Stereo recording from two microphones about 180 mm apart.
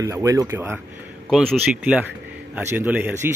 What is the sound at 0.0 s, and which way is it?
Speech, 20° right (ahead or behind).